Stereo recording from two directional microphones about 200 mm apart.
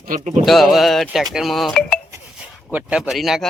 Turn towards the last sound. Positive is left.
turn(degrees=0)  # may be behind; listen again after turning